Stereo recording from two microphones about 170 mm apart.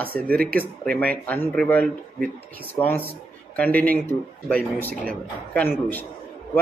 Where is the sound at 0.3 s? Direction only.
60° right (ahead or behind).